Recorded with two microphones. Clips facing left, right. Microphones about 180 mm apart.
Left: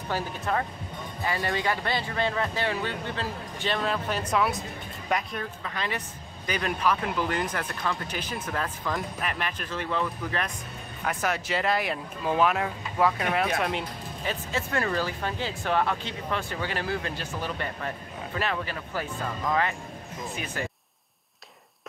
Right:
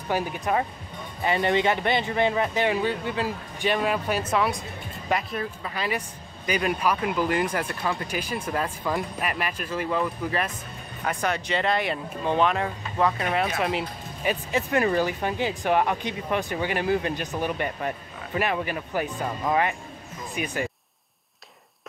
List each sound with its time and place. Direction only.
0.1 s speech: 15° right (ahead or behind)
14.3 s speech: 15° right (ahead or behind)